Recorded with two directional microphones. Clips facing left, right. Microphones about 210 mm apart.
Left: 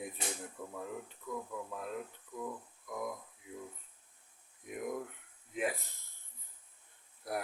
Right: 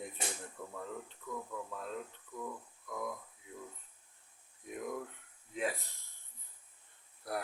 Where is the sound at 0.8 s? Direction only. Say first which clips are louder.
Left 1 dB; 10° left (ahead or behind).